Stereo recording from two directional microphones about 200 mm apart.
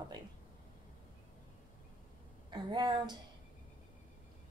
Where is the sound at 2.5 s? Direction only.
20° right (ahead or behind).